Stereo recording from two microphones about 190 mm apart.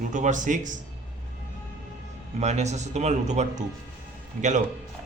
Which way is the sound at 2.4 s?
35° right (ahead or behind).